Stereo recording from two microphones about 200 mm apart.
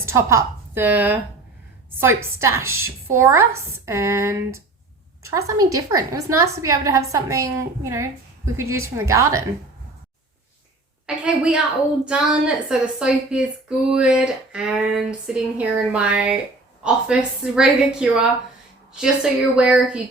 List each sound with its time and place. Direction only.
0.0 s a woman's voice: 15° right (ahead or behind)
11.0 s a woman's voice: 5° right (ahead or behind)